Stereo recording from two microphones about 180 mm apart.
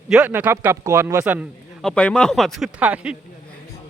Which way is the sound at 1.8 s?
5° left (ahead or behind).